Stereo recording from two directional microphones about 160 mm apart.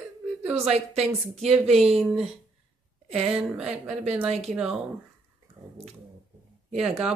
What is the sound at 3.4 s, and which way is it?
Speech, 5° right (ahead or behind).